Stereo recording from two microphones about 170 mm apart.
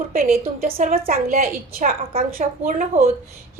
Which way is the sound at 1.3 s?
40° right (ahead or behind).